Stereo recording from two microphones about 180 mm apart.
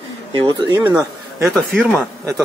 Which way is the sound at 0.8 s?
10° right (ahead or behind).